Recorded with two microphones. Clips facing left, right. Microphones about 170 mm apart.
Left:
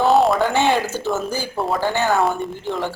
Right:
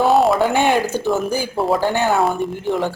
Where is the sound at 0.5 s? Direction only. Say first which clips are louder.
Right 2 dB; 15° right (ahead or behind).